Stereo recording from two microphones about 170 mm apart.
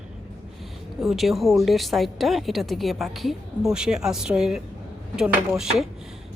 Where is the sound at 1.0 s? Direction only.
Centre (ahead or behind).